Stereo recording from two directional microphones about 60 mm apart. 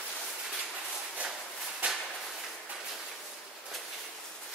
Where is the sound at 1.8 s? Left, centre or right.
Right.